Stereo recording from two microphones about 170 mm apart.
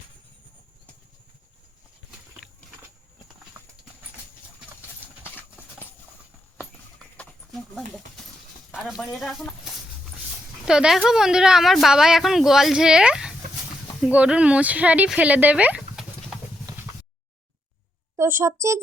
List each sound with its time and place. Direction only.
5.2 s clip-clop: 10° left (ahead or behind)
7.2 s a sound: centre (ahead or behind)
8.7 s a woman's voice: centre (ahead or behind)
10.7 s a woman's voice: 5° right (ahead or behind)
18.2 s a woman's voice: 15° right (ahead or behind)